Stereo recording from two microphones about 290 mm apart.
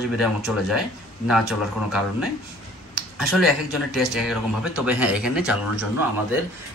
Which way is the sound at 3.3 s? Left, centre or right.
Centre.